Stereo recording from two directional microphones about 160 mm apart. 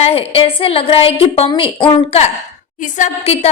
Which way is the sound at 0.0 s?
35° left (ahead or behind).